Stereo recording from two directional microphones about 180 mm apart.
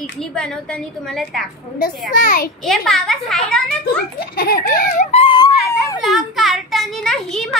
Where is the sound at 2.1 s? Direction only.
50° left (ahead or behind).